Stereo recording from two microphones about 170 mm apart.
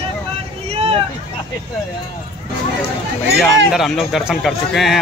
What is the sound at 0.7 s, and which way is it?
Vehicle, 35° right (ahead or behind).